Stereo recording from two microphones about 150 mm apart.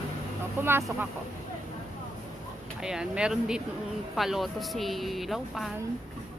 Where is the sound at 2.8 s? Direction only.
5° right (ahead or behind).